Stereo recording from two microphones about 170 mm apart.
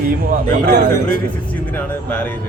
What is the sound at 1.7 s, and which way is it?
Speech, 10° left (ahead or behind).